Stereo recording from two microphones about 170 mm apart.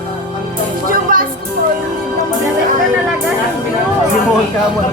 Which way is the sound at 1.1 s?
55° right (ahead or behind).